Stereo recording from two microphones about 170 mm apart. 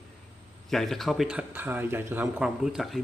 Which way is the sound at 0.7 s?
Centre (ahead or behind).